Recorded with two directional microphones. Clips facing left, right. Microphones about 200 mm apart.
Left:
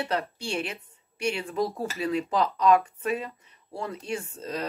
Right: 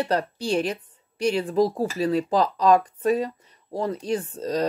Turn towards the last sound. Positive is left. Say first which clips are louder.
# right 7 dB
turn(degrees=-35)  # may be behind; listen again after turning